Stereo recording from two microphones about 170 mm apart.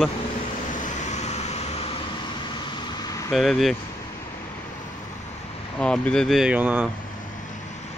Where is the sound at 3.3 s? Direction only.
Centre (ahead or behind).